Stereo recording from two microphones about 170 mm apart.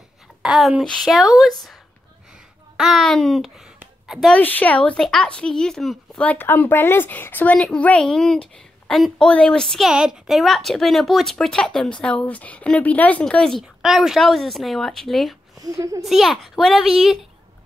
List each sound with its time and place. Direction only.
0.4 s a woman's voice: centre (ahead or behind)
2.8 s a woman's voice: centre (ahead or behind)
15.6 s a child's voice: 20° right (ahead or behind)
16.0 s a woman's voice: centre (ahead or behind)